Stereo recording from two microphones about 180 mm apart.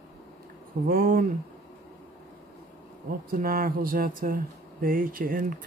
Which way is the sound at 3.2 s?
50° right (ahead or behind).